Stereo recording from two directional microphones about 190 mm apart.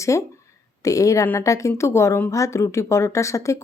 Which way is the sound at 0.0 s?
15° left (ahead or behind).